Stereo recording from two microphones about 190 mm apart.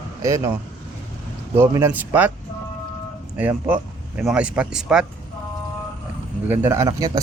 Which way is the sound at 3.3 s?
10° right (ahead or behind).